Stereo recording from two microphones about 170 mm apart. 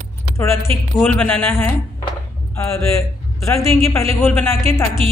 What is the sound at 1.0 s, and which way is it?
A man's voice, 10° left (ahead or behind).